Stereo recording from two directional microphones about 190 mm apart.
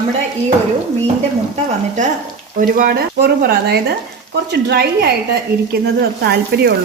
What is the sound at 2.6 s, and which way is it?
A woman's voice, 50° right (ahead or behind).